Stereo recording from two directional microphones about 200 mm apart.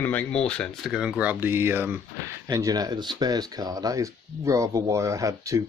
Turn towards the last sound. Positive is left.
turn(degrees=-15)  # may be behind; listen again after turning